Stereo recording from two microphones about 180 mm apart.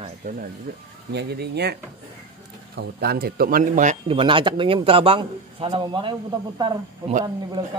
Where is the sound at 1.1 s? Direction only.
65° right (ahead or behind).